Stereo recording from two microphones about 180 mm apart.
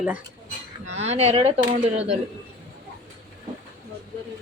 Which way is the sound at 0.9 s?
35° right (ahead or behind).